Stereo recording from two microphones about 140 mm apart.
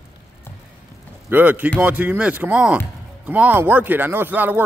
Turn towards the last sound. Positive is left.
turn(degrees=-15)  # may be behind; listen again after turning